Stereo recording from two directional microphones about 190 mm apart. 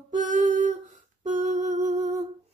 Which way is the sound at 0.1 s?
40° right (ahead or behind).